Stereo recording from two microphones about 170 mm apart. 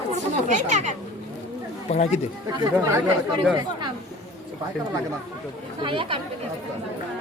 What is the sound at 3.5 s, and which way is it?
Speech, 25° right (ahead or behind).